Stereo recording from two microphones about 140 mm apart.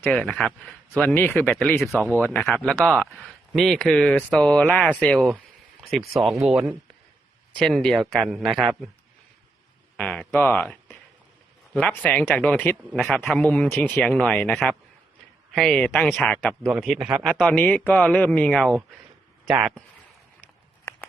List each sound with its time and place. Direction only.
0.1 s a man's voice: 5° left (ahead or behind)
2.0 s a man's voice: 15° left (ahead or behind)
10.0 s a man's voice: 10° left (ahead or behind)
20.9 s a sound: 20° left (ahead or behind)